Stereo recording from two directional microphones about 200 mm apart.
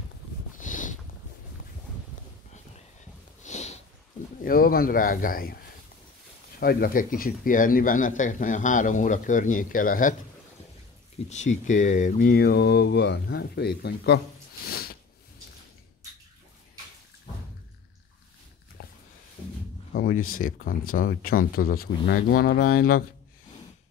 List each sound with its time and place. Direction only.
0.6 s a sound: 40° left (ahead or behind)
3.4 s sniff: 35° left (ahead or behind)
4.4 s a man's voice: 45° left (ahead or behind)
11.2 s speech: 35° left (ahead or behind)
18.8 s a sound: 50° left (ahead or behind)
19.9 s speech: 45° left (ahead or behind)